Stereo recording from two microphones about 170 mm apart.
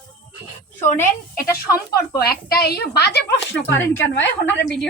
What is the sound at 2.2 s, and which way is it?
A woman's voice, 65° left (ahead or behind).